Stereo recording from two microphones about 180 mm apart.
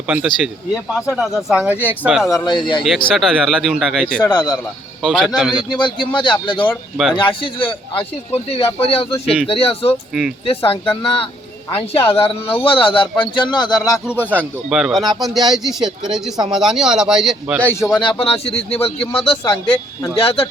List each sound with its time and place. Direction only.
0.1 s speech: 5° right (ahead or behind)
2.3 s a man's voice: 25° left (ahead or behind)
3.2 s speech: centre (ahead or behind)
4.2 s speech: 10° left (ahead or behind)
5.7 s a man's voice: 25° left (ahead or behind)
6.9 s speech: 5° right (ahead or behind)
7.2 s a man's voice: 30° left (ahead or behind)
9.2 s speech: centre (ahead or behind)
9.5 s a man's voice: 30° left (ahead or behind)
14.2 s speech: 10° left (ahead or behind)
14.7 s speech: 5° right (ahead or behind)
17.6 s speech: 10° left (ahead or behind)
17.9 s speech: 25° left (ahead or behind)